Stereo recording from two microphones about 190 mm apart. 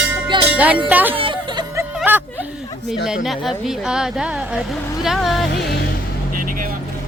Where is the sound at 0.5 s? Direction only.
5° right (ahead or behind).